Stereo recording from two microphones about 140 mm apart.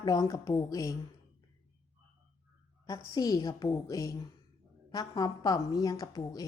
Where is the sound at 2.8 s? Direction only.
25° left (ahead or behind).